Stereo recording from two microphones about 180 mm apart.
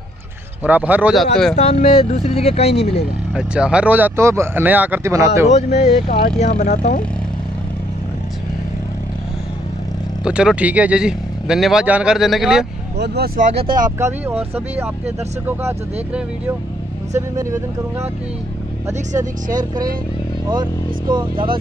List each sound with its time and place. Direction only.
0.7 s speech: 10° right (ahead or behind)
1.6 s speech: 35° left (ahead or behind)
3.3 s speech: 5° right (ahead or behind)
5.5 s speech: 40° left (ahead or behind)
10.2 s speech: 5° right (ahead or behind)
12.9 s speech: 65° right (ahead or behind)
13.8 s speech: 15° right (ahead or behind)
18.9 s speech: 20° right (ahead or behind)
21.1 s speech: 25° right (ahead or behind)